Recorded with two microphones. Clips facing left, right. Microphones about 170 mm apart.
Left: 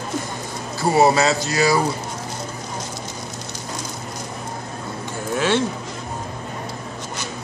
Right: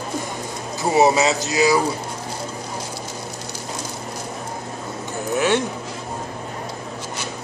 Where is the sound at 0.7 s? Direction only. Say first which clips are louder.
Even; 20° right (ahead or behind).